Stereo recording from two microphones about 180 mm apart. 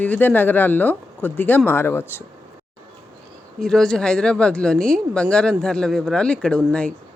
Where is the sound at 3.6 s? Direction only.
Centre (ahead or behind).